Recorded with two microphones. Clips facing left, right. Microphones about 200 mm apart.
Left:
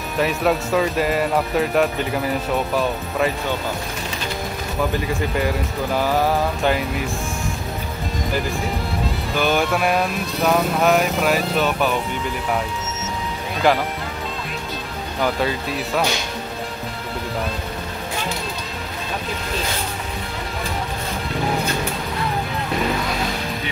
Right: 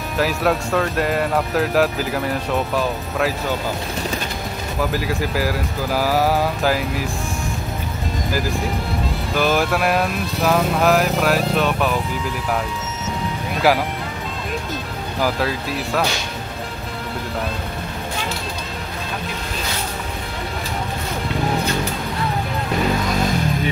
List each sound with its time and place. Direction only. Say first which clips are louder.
0.2 s speech: even; centre (ahead or behind)
4.9 s speech: even; 5° right (ahead or behind)
8.3 s speech: right 1 dB; centre (ahead or behind)
13.6 s speech: right 1 dB; 5° right (ahead or behind)
15.1 s speech: even; centre (ahead or behind)